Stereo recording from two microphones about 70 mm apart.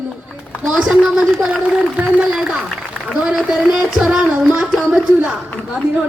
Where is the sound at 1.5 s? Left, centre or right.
Centre.